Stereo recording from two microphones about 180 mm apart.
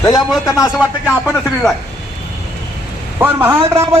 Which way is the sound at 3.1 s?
10° right (ahead or behind).